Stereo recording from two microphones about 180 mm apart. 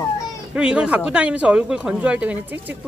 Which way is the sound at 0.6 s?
5° right (ahead or behind).